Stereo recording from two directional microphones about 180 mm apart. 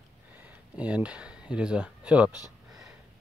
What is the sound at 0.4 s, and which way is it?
Speech, 5° right (ahead or behind).